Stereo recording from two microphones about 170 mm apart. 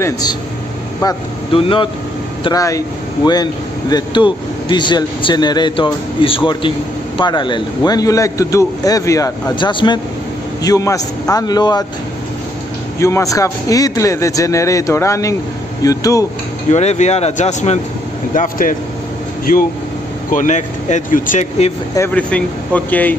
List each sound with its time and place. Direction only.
0.0 s speech: 25° left (ahead or behind)
2.4 s speech: 20° left (ahead or behind)
3.9 s speech: 25° left (ahead or behind)
13.0 s speech: 20° left (ahead or behind)
16.7 s speech: 40° left (ahead or behind); by 19.6 s 55° left (ahead or behind)
20.2 s speech: 45° left (ahead or behind)
21.9 s speech: 10° left (ahead or behind)